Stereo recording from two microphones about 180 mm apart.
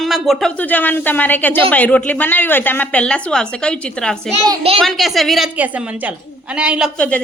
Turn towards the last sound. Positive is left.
turn(degrees=5)  # may be behind; listen again after turning